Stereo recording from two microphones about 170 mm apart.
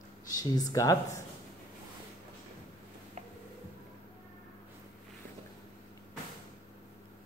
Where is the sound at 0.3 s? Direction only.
20° left (ahead or behind).